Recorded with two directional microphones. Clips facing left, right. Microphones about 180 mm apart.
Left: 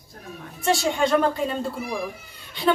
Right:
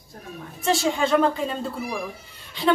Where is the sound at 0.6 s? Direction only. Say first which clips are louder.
Even; centre (ahead or behind).